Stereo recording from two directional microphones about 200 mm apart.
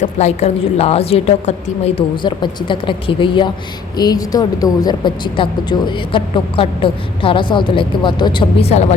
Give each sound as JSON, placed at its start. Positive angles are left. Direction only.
{"t": 0.0, "sound": "a woman's voice", "side_deg": 35}